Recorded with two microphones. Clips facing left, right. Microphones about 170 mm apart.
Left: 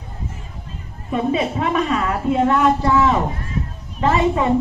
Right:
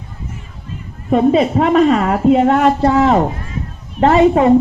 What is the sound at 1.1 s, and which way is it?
A woman's voice, 70° right (ahead or behind).